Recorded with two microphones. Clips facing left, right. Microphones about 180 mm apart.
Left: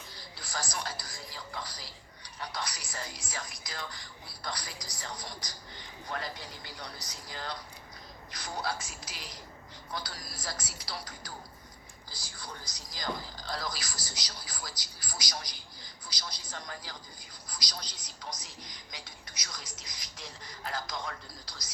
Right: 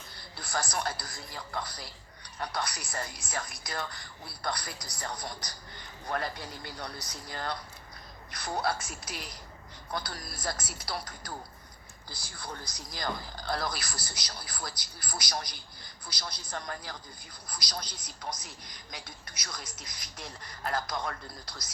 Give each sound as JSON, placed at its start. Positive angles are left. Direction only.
{"t": 0.3, "sound": "speech", "side_deg": -60}